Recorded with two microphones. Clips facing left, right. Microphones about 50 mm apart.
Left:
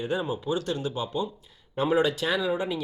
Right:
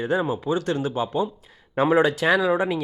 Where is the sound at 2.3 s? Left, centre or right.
Centre.